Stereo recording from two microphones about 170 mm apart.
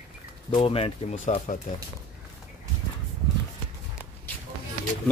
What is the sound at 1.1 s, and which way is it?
Speech, 45° left (ahead or behind).